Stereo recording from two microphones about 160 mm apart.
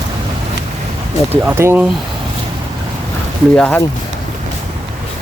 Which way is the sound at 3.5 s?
5° left (ahead or behind).